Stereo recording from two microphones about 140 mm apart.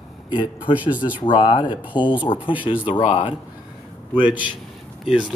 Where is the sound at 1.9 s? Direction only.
35° left (ahead or behind).